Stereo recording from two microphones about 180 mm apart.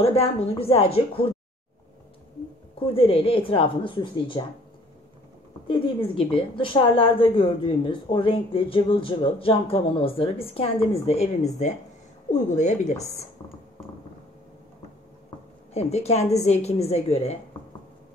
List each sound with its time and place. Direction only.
0.0 s a woman's voice: 35° left (ahead or behind)
2.8 s a woman's voice: 30° left (ahead or behind)
5.7 s a woman's voice: 30° left (ahead or behind)
15.7 s a woman's voice: 35° left (ahead or behind)